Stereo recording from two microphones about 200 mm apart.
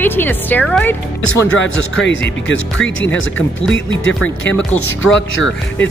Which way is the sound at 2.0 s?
65° left (ahead or behind).